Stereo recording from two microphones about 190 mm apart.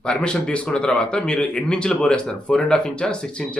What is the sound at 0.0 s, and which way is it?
A man's voice, 5° left (ahead or behind).